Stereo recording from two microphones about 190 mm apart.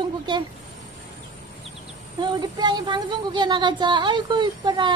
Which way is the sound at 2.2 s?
20° right (ahead or behind).